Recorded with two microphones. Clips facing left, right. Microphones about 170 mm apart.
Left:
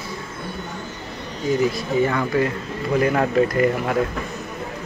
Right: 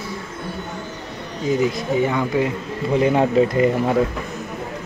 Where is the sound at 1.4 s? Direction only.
20° right (ahead or behind).